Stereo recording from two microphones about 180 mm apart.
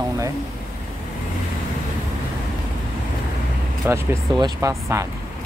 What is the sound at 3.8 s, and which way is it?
Speech, 10° right (ahead or behind).